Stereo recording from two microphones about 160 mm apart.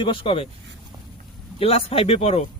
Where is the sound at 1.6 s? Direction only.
35° left (ahead or behind).